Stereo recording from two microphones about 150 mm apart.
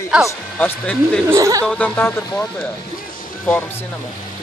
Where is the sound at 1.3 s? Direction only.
20° right (ahead or behind).